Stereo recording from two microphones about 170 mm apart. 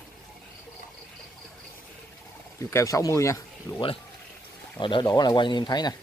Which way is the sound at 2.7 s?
15° left (ahead or behind).